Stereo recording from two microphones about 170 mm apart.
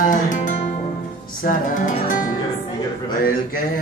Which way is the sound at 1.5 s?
50° left (ahead or behind).